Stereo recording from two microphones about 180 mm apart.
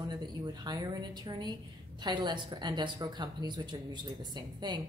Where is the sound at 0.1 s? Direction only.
25° right (ahead or behind).